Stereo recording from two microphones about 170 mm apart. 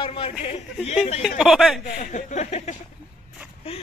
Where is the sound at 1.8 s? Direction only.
50° left (ahead or behind).